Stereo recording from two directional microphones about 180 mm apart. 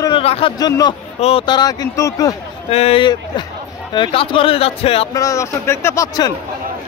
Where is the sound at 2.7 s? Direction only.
30° left (ahead or behind).